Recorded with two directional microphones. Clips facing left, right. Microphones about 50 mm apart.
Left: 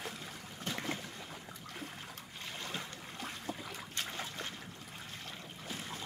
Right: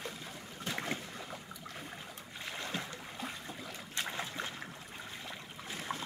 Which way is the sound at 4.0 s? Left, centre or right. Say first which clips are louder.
Right 4 dB; centre.